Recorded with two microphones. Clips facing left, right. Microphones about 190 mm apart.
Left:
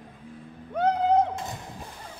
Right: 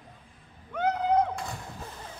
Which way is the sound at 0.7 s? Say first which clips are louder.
Left 3 dB; 30° left (ahead or behind).